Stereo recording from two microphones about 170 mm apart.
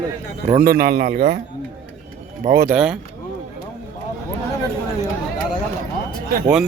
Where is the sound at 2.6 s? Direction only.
5° right (ahead or behind).